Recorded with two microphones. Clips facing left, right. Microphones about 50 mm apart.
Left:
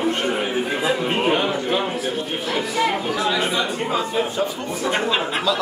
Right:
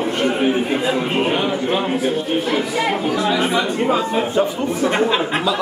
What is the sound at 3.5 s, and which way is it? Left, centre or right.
A man's voice, right.